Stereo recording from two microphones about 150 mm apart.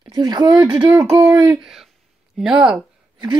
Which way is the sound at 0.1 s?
25° right (ahead or behind).